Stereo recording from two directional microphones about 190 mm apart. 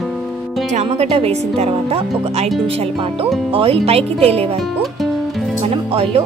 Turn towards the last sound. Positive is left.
turn(degrees=-30)  # may be behind; listen again after turning